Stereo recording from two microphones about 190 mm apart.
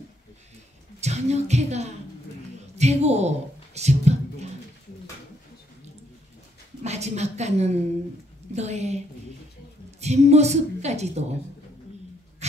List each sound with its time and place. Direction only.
1.0 s music: 35° right (ahead or behind)
2.8 s speech: 35° right (ahead or behind)
6.8 s a woman's voice: 35° right (ahead or behind)
8.5 s music: 35° right (ahead or behind)
9.8 s a woman's voice: 35° right (ahead or behind)